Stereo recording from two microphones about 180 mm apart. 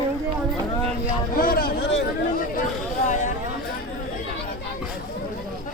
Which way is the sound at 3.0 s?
45° left (ahead or behind).